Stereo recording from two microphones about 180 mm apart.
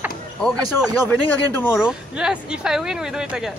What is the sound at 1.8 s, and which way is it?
Speech, 5° right (ahead or behind).